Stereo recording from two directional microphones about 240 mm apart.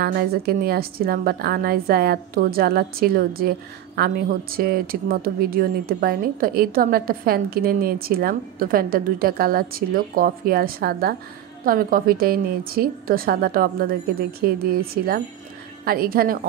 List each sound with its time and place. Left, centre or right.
0.0 s a woman's voice: right